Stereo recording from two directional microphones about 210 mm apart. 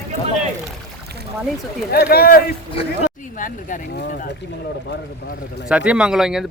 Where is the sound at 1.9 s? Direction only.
45° left (ahead or behind).